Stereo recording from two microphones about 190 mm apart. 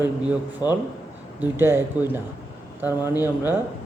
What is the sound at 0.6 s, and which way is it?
Speech, 20° left (ahead or behind).